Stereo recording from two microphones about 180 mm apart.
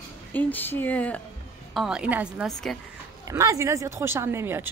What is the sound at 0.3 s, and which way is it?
Speech, 10° left (ahead or behind).